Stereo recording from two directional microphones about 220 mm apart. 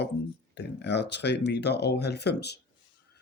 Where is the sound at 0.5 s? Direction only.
50° left (ahead or behind).